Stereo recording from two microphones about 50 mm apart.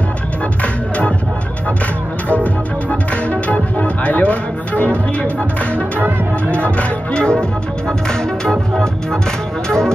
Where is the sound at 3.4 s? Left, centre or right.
Left.